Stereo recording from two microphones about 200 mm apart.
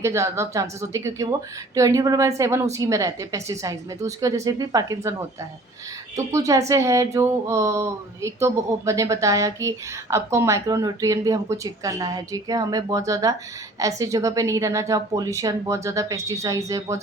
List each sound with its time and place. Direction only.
0.0 s speech: 15° right (ahead or behind)
6.1 s speech: 15° right (ahead or behind)